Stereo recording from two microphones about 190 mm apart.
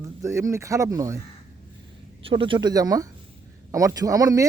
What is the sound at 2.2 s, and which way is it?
Speech, 25° right (ahead or behind).